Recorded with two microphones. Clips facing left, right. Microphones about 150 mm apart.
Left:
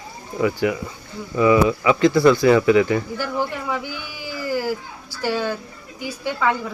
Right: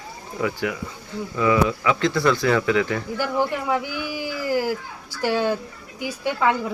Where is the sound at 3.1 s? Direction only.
15° right (ahead or behind).